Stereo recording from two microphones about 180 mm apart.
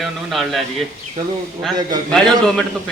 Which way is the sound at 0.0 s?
Centre (ahead or behind).